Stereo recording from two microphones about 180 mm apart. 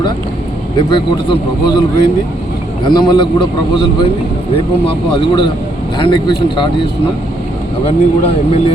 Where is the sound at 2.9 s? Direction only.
25° left (ahead or behind).